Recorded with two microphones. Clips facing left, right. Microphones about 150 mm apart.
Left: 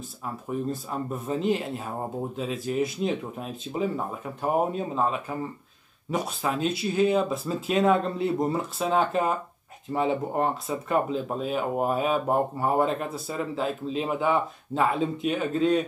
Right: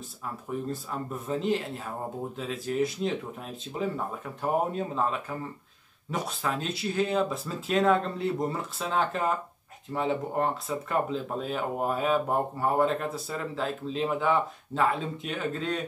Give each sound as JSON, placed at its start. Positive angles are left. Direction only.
{"t": 0.8, "sound": "speech", "side_deg": 15}